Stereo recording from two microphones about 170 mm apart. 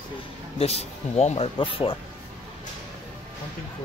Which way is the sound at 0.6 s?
35° left (ahead or behind).